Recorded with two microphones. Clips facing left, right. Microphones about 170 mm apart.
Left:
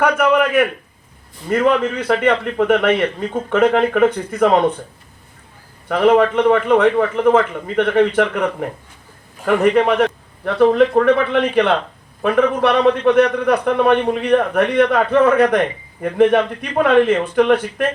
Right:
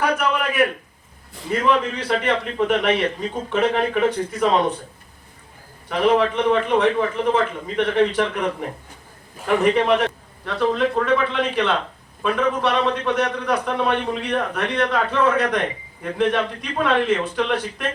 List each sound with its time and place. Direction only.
0.0 s a sound: 60° left (ahead or behind)
1.5 s a man's voice: 55° left (ahead or behind)
5.9 s a man's voice: 55° left (ahead or behind)
9.5 s a man's voice: 55° left (ahead or behind)